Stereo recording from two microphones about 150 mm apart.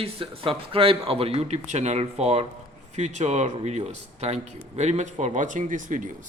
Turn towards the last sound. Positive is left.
turn(degrees=-60)  # may be behind; listen again after turning